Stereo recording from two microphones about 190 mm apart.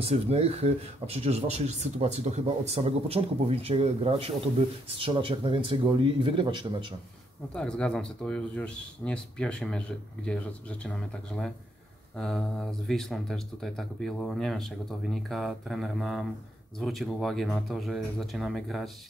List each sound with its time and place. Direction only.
0.0 s speech: 35° right (ahead or behind)
7.5 s speech: 5° left (ahead or behind)